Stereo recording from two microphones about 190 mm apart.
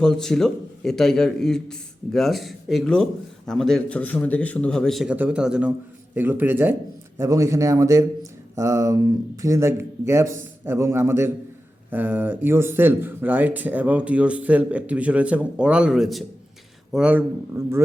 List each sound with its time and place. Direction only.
0.0 s a man's voice: 5° left (ahead or behind); by 17.8 s 15° right (ahead or behind)